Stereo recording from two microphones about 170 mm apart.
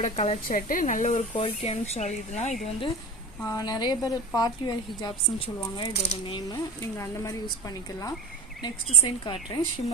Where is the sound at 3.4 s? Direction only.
20° left (ahead or behind).